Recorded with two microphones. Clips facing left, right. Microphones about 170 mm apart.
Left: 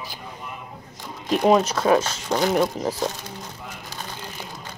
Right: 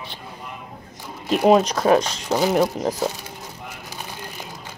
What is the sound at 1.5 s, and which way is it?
Speech, 30° right (ahead or behind).